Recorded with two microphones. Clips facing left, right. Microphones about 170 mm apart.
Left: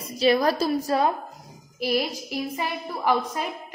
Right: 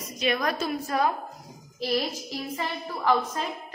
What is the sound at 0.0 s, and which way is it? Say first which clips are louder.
A woman's voice: left 7 dB; 35° left (ahead or behind).